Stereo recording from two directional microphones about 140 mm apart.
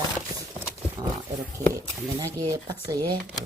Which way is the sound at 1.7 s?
20° right (ahead or behind).